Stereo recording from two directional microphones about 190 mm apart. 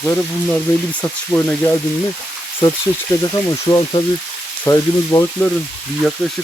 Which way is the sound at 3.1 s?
15° left (ahead or behind).